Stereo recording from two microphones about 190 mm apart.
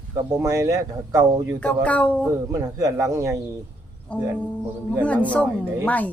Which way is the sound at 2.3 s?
15° right (ahead or behind).